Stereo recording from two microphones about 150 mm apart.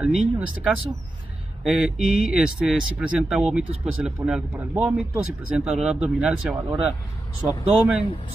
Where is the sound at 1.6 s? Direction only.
Centre (ahead or behind).